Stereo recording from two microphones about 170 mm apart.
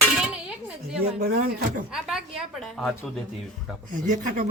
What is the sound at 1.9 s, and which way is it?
A woman's voice, 5° right (ahead or behind).